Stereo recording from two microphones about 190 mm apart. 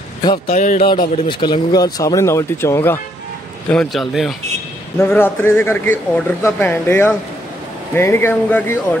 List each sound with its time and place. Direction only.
0.5 s speech: 40° left (ahead or behind)
0.8 s a man's voice: 25° left (ahead or behind); by 4.4 s centre (ahead or behind)
4.9 s speech: 10° left (ahead or behind)